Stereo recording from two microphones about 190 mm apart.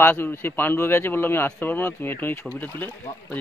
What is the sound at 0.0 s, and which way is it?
A man's voice, 10° left (ahead or behind).